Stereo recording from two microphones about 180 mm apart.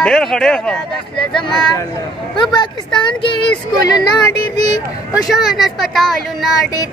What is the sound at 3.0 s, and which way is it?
Speech, 30° left (ahead or behind).